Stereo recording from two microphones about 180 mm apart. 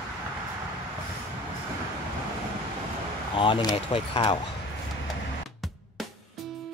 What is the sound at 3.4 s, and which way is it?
Speech, 30° left (ahead or behind).